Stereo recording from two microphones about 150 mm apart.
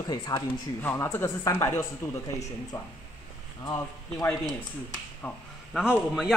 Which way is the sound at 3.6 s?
25° left (ahead or behind).